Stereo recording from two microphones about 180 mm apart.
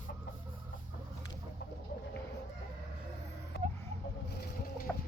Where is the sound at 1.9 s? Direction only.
55° left (ahead or behind).